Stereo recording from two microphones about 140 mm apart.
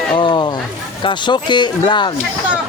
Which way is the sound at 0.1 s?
35° left (ahead or behind).